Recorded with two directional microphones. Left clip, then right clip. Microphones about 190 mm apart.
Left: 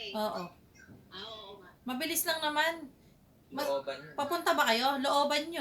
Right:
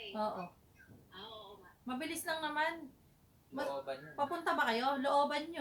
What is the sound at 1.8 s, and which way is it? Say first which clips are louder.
Speech: left 6 dB; 25° left (ahead or behind).